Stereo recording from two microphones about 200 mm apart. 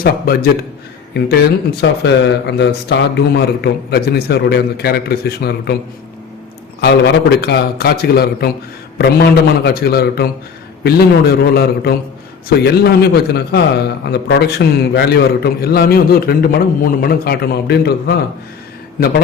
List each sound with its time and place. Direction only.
0.0 s a man's voice: 50° left (ahead or behind)
6.8 s a man's voice: 55° left (ahead or behind)